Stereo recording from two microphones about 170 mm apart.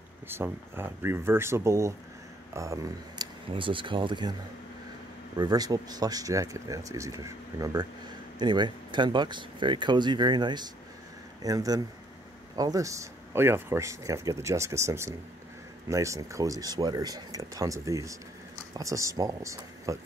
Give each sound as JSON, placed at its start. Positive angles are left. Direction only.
{"t": 0.3, "sound": "speech", "side_deg": -15}
{"t": 5.4, "sound": "speech", "side_deg": -20}